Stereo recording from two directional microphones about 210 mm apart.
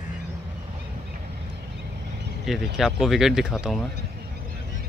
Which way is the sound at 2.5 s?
Centre (ahead or behind).